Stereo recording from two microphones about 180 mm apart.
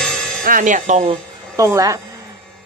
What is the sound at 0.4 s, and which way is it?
Speech, 50° right (ahead or behind).